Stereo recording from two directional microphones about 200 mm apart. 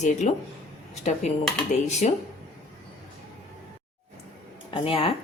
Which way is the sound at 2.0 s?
35° left (ahead or behind).